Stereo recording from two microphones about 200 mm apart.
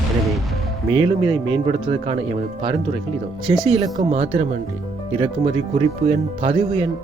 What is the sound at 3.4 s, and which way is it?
Speech, 5° right (ahead or behind).